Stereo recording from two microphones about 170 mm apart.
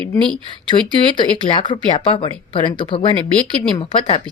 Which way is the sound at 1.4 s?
30° left (ahead or behind).